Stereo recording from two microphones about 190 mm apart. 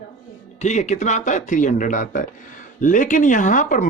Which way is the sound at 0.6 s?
35° left (ahead or behind).